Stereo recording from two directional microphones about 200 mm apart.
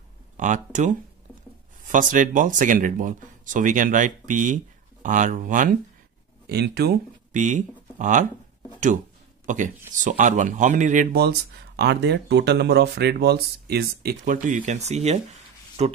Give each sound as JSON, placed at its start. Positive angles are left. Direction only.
{"t": 0.4, "sound": "speech", "side_deg": -40}
{"t": 6.5, "sound": "speech", "side_deg": -55}
{"t": 7.3, "sound": "speech", "side_deg": -40}
{"t": 9.5, "sound": "speech", "side_deg": -40}
{"t": 11.1, "sound": "speech", "side_deg": -55}